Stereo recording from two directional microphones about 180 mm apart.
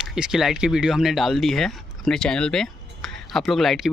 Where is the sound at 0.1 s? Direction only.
5° right (ahead or behind).